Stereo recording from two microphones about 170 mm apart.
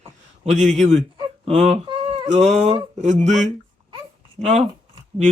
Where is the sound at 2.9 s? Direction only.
45° right (ahead or behind).